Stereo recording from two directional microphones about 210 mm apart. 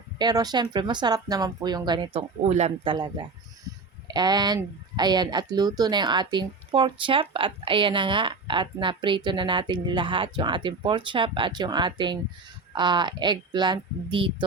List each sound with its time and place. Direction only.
0.2 s speech: 20° right (ahead or behind)
2.5 s speech: 30° right (ahead or behind)